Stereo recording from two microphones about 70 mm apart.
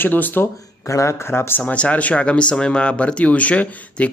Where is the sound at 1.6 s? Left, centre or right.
Centre.